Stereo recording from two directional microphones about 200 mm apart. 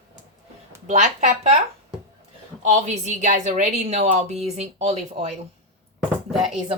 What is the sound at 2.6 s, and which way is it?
Speech, 35° right (ahead or behind).